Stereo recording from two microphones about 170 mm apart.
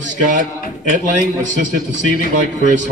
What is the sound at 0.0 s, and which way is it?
A man's voice, 50° right (ahead or behind).